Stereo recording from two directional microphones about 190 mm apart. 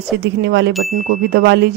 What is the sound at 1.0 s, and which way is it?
Music, 50° right (ahead or behind).